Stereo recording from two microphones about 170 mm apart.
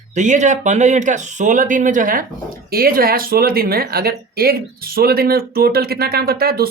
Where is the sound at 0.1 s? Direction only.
45° right (ahead or behind).